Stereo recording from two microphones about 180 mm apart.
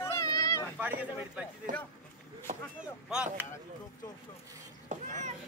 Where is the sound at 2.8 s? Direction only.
5° right (ahead or behind).